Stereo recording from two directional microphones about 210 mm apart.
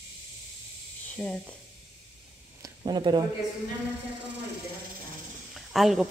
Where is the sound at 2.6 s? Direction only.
20° right (ahead or behind).